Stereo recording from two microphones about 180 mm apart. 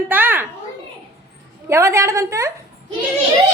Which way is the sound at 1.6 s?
15° right (ahead or behind).